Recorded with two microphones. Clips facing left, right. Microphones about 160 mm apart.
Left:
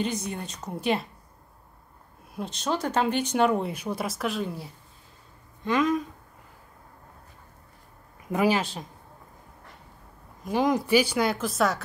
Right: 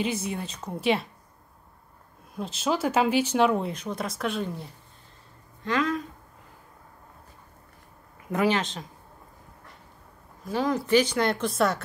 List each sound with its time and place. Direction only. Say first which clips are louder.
0.0 s speech: right 1 dB; 5° right (ahead or behind)
2.3 s speech: right 2 dB; centre (ahead or behind)
5.6 s speech: left 3 dB; 15° left (ahead or behind)
8.3 s a woman's voice: left 1 dB; 10° left (ahead or behind)
10.4 s a woman's voice: left 2 dB; 15° left (ahead or behind); by 11.8 s centre (ahead or behind)